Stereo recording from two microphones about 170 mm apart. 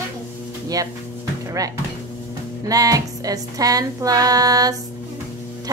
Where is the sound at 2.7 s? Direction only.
20° right (ahead or behind).